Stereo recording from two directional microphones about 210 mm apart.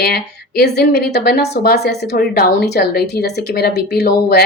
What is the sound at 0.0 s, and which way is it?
Speech, 50° left (ahead or behind).